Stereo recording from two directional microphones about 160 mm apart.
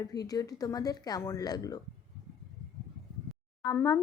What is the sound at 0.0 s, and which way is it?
A woman's voice, 25° left (ahead or behind).